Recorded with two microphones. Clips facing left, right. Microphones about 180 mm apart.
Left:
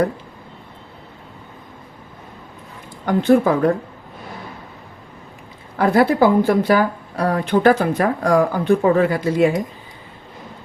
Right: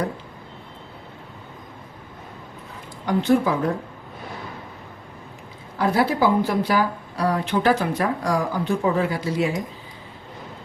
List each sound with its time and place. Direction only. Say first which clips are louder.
3.1 s speech: left 5 dB; 55° left (ahead or behind)
5.7 s speech: left 5 dB; 55° left (ahead or behind)